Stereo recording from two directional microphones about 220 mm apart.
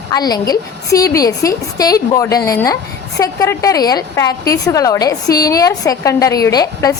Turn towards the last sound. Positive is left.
turn(degrees=15)  # may be behind; listen again after turning